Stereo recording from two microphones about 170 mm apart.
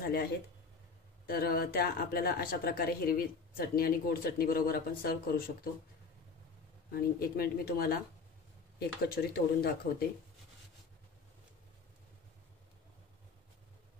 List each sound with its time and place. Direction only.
1.2 s speech: 60° left (ahead or behind)
6.9 s speech: 60° left (ahead or behind)